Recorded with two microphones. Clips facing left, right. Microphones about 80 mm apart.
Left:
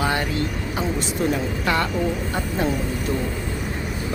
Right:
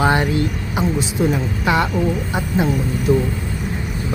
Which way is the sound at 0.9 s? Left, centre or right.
Centre.